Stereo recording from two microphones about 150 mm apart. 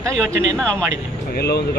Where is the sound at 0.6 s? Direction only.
10° left (ahead or behind).